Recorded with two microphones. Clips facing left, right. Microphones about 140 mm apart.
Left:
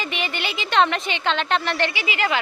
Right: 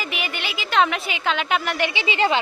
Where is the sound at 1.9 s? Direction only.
30° right (ahead or behind).